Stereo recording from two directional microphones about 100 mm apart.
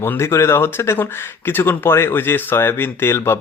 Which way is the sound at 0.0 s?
25° left (ahead or behind).